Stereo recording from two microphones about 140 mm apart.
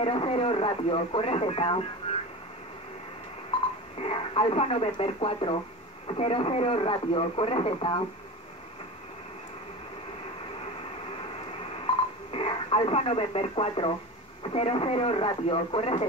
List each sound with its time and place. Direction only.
0.0 s speech: 40° left (ahead or behind)
4.0 s speech: 40° left (ahead or behind)
11.8 s telephone dialing: 40° left (ahead or behind)
14.4 s speech: 45° left (ahead or behind)